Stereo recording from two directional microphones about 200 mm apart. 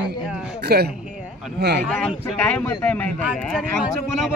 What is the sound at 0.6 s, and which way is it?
Speech, 55° right (ahead or behind).